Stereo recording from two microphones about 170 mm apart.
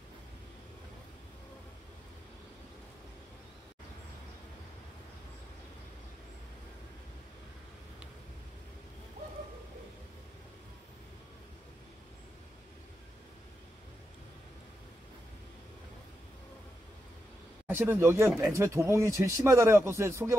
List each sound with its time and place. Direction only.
17.6 s speech: 10° right (ahead or behind)